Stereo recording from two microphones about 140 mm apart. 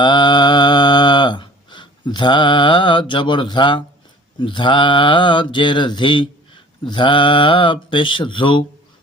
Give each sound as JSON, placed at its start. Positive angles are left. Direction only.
{"t": 0.0, "sound": "mantra", "side_deg": 35}